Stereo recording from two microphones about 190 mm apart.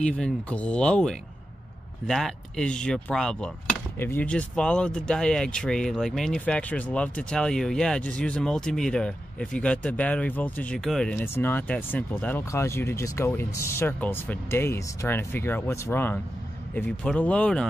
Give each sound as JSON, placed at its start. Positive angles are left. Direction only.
{"t": 0.0, "sound": "speech", "side_deg": 5}